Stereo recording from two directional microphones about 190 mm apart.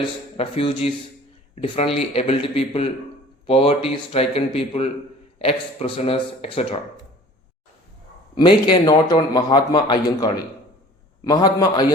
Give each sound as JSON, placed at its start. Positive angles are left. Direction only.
{"t": 0.3, "sound": "a man's voice", "side_deg": 30}
{"t": 8.4, "sound": "a man's voice", "side_deg": 25}